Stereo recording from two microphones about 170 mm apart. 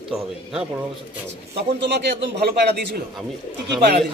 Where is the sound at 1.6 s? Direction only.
90° right.